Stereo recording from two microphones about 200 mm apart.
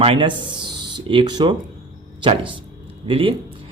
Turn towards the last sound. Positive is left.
turn(degrees=-25)  # may be behind; listen again after turning